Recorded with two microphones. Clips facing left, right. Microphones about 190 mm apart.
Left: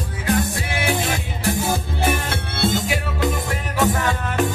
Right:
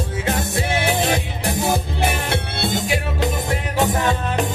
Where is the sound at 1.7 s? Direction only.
20° right (ahead or behind).